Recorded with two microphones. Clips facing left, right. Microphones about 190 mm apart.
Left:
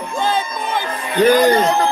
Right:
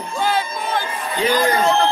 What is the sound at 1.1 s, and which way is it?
Speech, 60° left (ahead or behind).